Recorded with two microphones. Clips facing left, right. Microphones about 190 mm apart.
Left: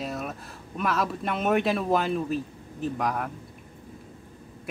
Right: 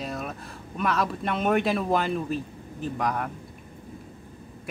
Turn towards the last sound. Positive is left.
turn(degrees=0)  # may be behind; listen again after turning